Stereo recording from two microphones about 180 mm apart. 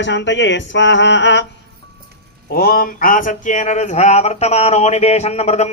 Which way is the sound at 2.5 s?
60° left (ahead or behind).